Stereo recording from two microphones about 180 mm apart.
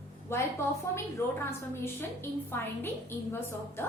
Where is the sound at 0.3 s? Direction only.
15° left (ahead or behind).